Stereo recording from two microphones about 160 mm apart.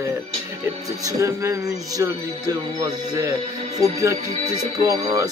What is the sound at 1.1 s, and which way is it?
Speech, 20° right (ahead or behind).